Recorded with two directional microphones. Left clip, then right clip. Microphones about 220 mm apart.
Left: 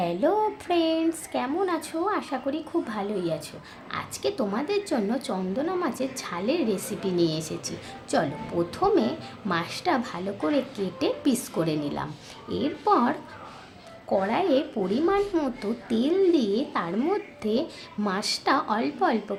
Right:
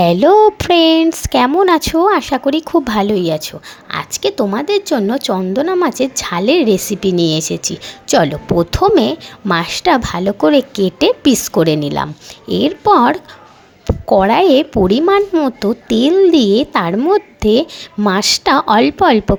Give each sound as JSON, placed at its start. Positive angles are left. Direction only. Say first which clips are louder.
{"t": 0.0, "sound": "a woman's voice", "louder": "right 16 dB", "side_deg": -40}